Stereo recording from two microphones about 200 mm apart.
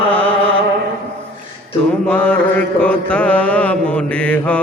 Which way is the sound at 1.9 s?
5° left (ahead or behind).